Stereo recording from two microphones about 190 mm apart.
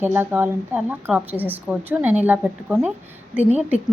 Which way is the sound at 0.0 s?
10° right (ahead or behind).